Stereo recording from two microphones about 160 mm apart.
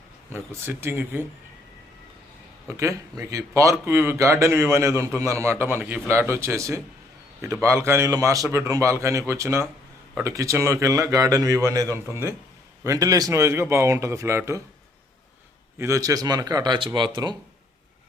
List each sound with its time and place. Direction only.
0.3 s a man's voice: 15° right (ahead or behind)
2.6 s a man's voice: 20° right (ahead or behind)
15.8 s speech: 20° right (ahead or behind)